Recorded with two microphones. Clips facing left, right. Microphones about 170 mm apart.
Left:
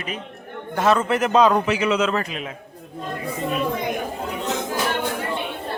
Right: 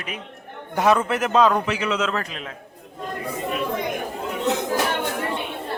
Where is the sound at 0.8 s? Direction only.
15° right (ahead or behind).